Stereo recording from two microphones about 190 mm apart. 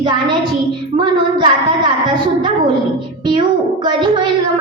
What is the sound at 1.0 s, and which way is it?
A woman's voice, 25° right (ahead or behind).